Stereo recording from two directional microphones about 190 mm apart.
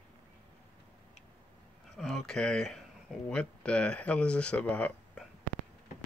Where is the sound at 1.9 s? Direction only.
Centre (ahead or behind).